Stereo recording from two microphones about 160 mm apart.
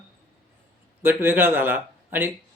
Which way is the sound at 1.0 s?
15° right (ahead or behind).